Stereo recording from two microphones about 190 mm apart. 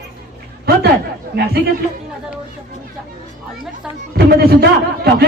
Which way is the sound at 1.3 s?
55° right (ahead or behind).